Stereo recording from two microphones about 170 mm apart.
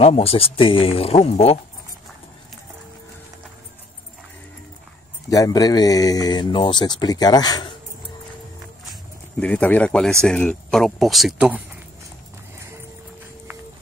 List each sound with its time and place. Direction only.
0.0 s speech: 35° left (ahead or behind)
5.3 s speech: 20° left (ahead or behind)
9.4 s speech: 10° left (ahead or behind)